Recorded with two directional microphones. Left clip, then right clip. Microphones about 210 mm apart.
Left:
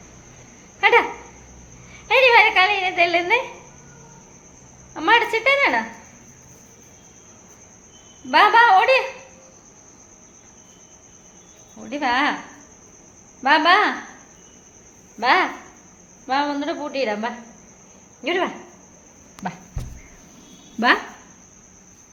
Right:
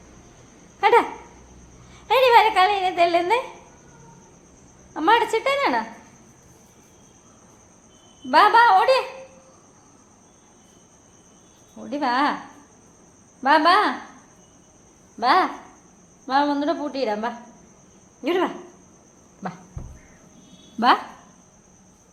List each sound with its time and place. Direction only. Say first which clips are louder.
0.8 s dog: left 1 dB; 10° right (ahead or behind)
1.9 s a sound: left 1 dB; 10° right (ahead or behind)
4.9 s a woman's voice: left 1 dB; 10° right (ahead or behind)
8.3 s a woman's voice: left 1 dB; 10° right (ahead or behind)
11.8 s a woman's voice: left 1 dB; 10° right (ahead or behind)
13.4 s a woman's voice: left 1 dB; 10° right (ahead or behind)
15.2 s a woman's voice: left 1 dB; 10° right (ahead or behind)
19.4 s walk: left 3 dB; 5° right (ahead or behind)
20.7 s speech: even; 15° right (ahead or behind)